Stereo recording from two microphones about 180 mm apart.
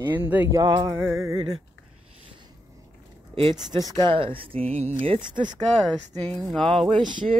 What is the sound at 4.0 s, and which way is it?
Speech, 30° right (ahead or behind).